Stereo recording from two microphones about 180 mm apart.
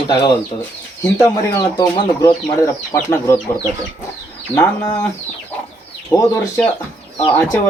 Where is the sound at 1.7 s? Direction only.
20° left (ahead or behind).